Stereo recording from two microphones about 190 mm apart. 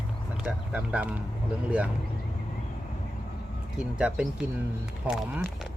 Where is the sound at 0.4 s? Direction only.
5° right (ahead or behind).